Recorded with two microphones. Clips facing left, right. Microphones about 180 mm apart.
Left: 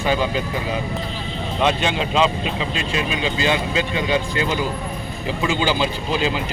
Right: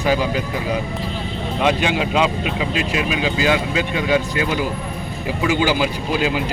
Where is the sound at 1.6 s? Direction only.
10° right (ahead or behind).